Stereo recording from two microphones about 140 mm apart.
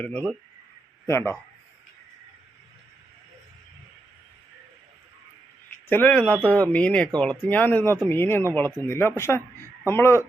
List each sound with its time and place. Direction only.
0.0 s a man's voice: 10° left (ahead or behind)
5.9 s speech: 10° left (ahead or behind)